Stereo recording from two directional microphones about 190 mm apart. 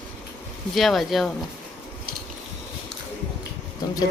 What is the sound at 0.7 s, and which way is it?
Speech, centre (ahead or behind).